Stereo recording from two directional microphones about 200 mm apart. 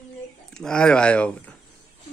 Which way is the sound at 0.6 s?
5° left (ahead or behind).